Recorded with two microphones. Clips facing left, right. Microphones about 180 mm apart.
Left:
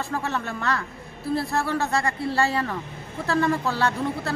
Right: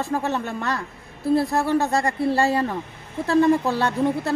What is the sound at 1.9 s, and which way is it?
Speech, 45° right (ahead or behind).